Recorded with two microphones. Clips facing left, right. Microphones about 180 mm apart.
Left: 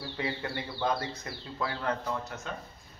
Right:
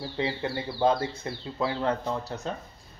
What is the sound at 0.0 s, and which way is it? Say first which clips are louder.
Speech: right 5 dB; 25° right (ahead or behind).